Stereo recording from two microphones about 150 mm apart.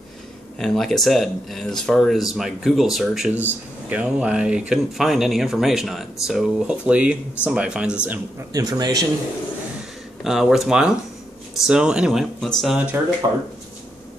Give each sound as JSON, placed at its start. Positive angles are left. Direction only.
{"t": 0.6, "sound": "speech", "side_deg": 0}
{"t": 8.5, "sound": "a man's voice", "side_deg": -25}
{"t": 10.2, "sound": "speech", "side_deg": 0}